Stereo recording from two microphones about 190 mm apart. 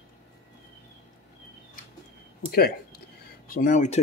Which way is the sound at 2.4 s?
55° left (ahead or behind).